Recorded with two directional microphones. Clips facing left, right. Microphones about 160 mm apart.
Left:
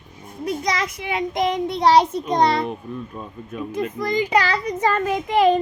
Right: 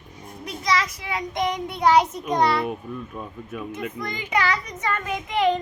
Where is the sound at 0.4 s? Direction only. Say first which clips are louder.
Left 2 dB; 30° left (ahead or behind).